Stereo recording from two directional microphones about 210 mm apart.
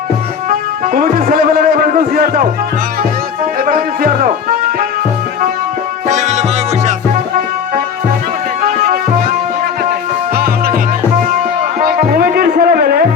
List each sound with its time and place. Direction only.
0.5 s a man's voice: 40° right (ahead or behind)
3.7 s speech: 40° right (ahead or behind)
6.1 s music: 35° right (ahead or behind)
8.6 s music: 45° right (ahead or behind)
10.3 s music: 45° right (ahead or behind)
11.8 s music: 45° right (ahead or behind)